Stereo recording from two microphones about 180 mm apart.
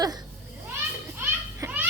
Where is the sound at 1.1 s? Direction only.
10° right (ahead or behind).